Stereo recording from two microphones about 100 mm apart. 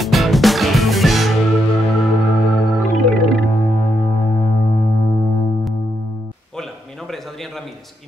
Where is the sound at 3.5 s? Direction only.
90° left.